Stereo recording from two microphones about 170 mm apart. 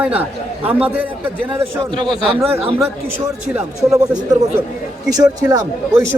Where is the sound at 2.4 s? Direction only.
10° right (ahead or behind).